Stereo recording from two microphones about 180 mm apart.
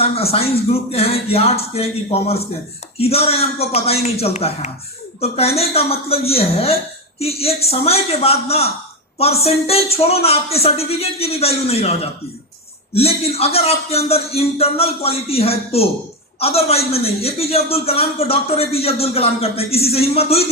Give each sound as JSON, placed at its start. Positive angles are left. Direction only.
{"t": 0.0, "sound": "a man's voice", "side_deg": 35}